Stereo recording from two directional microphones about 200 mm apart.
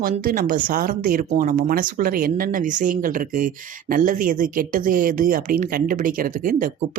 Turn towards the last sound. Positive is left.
turn(degrees=-40)  # may be behind; listen again after turning